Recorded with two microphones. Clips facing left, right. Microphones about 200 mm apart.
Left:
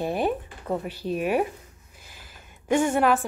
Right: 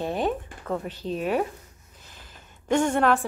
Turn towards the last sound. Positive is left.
turn(degrees=5)  # may be behind; listen again after turning